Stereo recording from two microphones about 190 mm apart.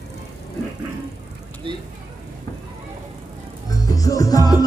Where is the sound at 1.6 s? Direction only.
25° right (ahead or behind).